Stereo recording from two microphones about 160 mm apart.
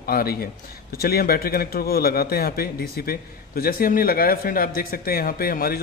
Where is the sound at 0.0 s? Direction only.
70° left (ahead or behind).